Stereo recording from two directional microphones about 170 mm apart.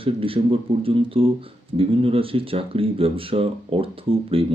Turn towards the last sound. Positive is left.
turn(degrees=-35)  # may be behind; listen again after turning